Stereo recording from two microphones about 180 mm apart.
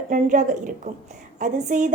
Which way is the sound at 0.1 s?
45° right (ahead or behind).